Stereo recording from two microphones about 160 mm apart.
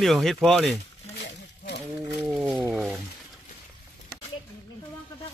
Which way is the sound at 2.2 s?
10° right (ahead or behind).